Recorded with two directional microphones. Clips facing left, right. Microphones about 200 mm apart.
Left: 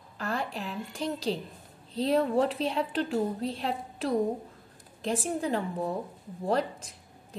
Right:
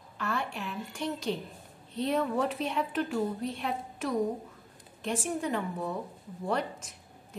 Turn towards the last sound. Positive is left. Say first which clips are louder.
# left 3 dB
turn(degrees=35)  # may be behind; listen again after turning